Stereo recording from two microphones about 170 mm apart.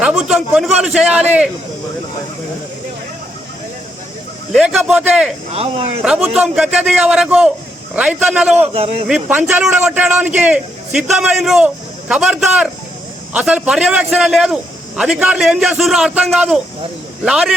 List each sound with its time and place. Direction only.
0.0 s a man's voice: 5° right (ahead or behind)
4.5 s a man's voice: centre (ahead or behind)
5.5 s a man's voice: 35° right (ahead or behind)
6.0 s a man's voice: centre (ahead or behind)
8.6 s a man's voice: 35° right (ahead or behind)
9.0 s a man's voice: 10° right (ahead or behind)